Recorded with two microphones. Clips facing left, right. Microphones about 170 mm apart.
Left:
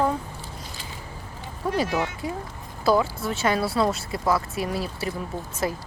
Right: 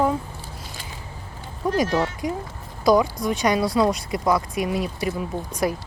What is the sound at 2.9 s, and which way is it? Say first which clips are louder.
Speech: right 3 dB; 15° right (ahead or behind).